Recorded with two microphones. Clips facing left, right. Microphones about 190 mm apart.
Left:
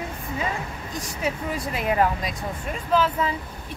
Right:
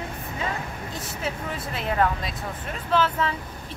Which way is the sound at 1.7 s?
10° left (ahead or behind).